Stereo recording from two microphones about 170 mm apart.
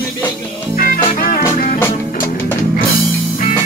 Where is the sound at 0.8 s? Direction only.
50° left (ahead or behind).